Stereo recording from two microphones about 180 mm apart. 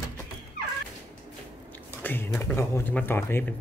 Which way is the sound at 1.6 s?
10° left (ahead or behind).